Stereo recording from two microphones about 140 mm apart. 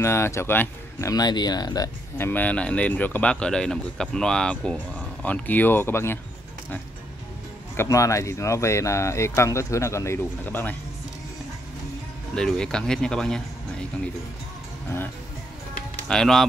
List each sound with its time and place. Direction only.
0.0 s speech: 20° left (ahead or behind)
1.1 s speech: 30° left (ahead or behind)
2.1 s speech: 15° left (ahead or behind)
7.7 s speech: 20° left (ahead or behind)
12.4 s speech: 5° left (ahead or behind)
16.1 s speech: 5° left (ahead or behind)